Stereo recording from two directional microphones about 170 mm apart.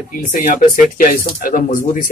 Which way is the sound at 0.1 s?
50° left (ahead or behind).